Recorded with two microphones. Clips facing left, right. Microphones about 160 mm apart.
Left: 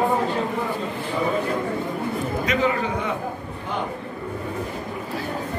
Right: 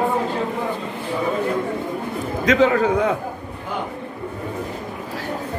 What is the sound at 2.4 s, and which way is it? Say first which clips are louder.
Speech: right 8 dB; 90° right.